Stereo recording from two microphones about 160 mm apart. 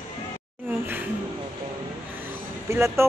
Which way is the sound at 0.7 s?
10° right (ahead or behind).